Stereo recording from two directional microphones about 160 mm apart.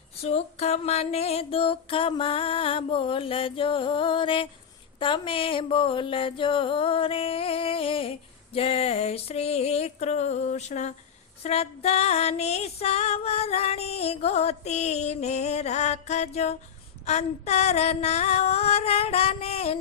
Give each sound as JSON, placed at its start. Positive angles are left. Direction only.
{"t": 0.2, "sound": "female singing", "side_deg": 40}